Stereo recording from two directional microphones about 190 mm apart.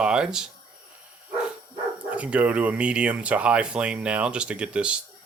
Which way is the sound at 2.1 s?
5° right (ahead or behind).